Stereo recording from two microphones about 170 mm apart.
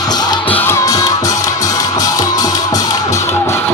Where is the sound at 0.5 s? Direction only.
15° left (ahead or behind).